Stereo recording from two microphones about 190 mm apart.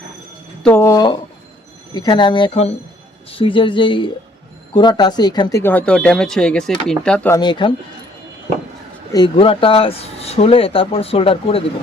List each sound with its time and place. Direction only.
0.6 s speech: 10° left (ahead or behind)
7.3 s speech: 25° left (ahead or behind)
9.1 s speech: 25° left (ahead or behind)